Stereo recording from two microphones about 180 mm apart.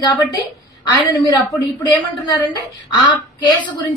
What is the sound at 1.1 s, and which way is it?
Speech, 20° left (ahead or behind).